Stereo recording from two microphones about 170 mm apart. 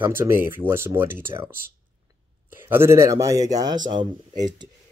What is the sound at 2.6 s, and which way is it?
Speech, 15° right (ahead or behind).